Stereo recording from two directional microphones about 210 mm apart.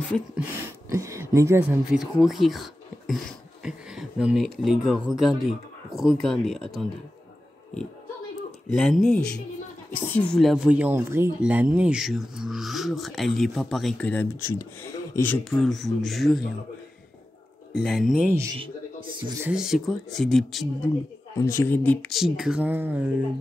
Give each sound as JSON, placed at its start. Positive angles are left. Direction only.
{"t": 0.8, "sound": "speech", "side_deg": -15}
{"t": 3.6, "sound": "a sound", "side_deg": -5}
{"t": 4.6, "sound": "speech", "side_deg": 0}
{"t": 8.6, "sound": "speech", "side_deg": 0}
{"t": 17.8, "sound": "speech", "side_deg": 0}
{"t": 19.1, "sound": "speech", "side_deg": -20}
{"t": 19.4, "sound": "speech", "side_deg": -5}
{"t": 21.4, "sound": "speech", "side_deg": 15}